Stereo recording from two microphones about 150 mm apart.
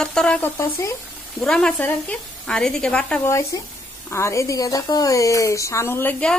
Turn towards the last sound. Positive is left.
turn(degrees=10)  # may be behind; listen again after turning